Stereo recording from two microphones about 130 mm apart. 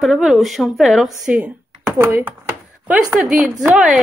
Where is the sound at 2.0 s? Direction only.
20° right (ahead or behind).